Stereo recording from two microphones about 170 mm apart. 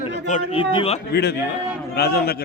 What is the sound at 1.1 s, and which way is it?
A man's voice, 80° left.